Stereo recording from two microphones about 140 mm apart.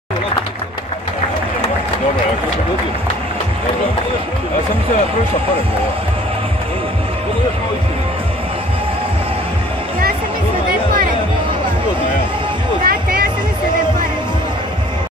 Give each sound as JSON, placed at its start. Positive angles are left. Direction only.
{"t": 12.8, "sound": "music", "side_deg": -90}